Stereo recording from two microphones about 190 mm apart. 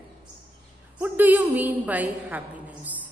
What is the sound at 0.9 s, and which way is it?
Speech, 10° right (ahead or behind).